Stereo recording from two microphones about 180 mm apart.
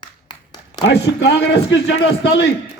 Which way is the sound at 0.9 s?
70° left (ahead or behind).